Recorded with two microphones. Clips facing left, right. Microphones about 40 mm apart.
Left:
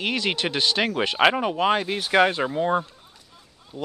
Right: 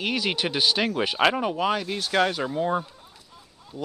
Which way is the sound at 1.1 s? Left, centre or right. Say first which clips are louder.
Left 3 dB; centre.